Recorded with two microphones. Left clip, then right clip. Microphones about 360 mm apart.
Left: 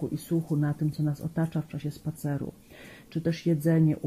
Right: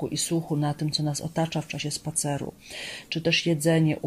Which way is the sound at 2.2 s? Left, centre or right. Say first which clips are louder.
Right 3 dB; right.